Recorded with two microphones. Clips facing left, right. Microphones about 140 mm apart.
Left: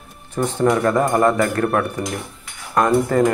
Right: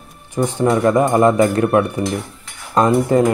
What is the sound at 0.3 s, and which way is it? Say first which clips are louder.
Speech: right 1 dB; 15° right (ahead or behind).